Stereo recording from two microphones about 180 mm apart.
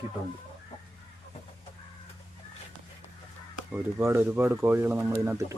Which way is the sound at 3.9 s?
15° right (ahead or behind).